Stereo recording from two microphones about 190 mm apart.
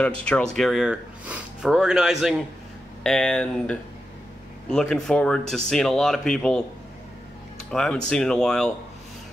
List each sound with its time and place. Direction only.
0.2 s speech: 5° left (ahead or behind)
7.7 s speech: 5° left (ahead or behind)